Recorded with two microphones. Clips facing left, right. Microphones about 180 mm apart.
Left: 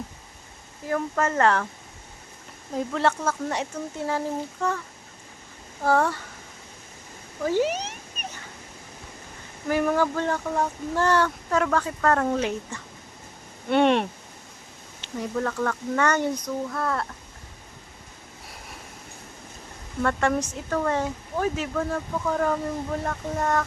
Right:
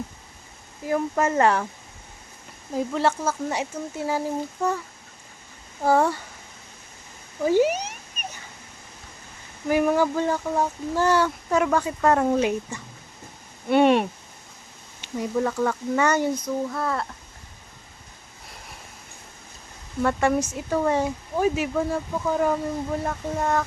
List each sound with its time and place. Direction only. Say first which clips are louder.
0.9 s speech: right 2 dB; 10° right (ahead or behind)
2.7 s speech: right 1 dB; 5° right (ahead or behind)
5.8 s speech: right 2 dB; 15° right (ahead or behind)
7.4 s speech: right 4 dB; 10° right (ahead or behind)
9.6 s speech: right 2 dB; 10° right (ahead or behind)
20.0 s speech: right 2 dB; 10° right (ahead or behind)